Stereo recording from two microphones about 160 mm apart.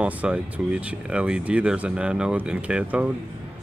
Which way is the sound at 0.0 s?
5° right (ahead or behind).